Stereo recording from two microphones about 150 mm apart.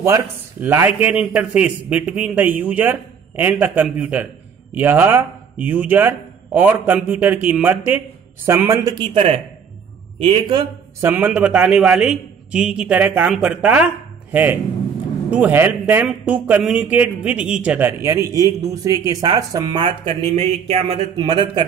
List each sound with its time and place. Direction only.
0.0 s a man's voice: 15° right (ahead or behind)
10.5 s a man's voice: 15° right (ahead or behind)
20.3 s speech: 45° right (ahead or behind)